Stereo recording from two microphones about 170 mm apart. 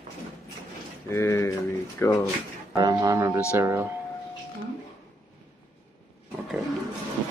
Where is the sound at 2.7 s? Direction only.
20° right (ahead or behind).